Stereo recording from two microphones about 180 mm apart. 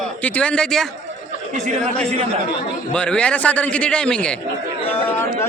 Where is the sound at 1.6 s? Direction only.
40° right (ahead or behind).